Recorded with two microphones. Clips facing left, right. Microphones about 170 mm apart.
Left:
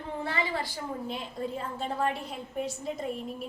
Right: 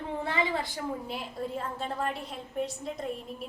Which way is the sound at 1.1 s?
Centre (ahead or behind).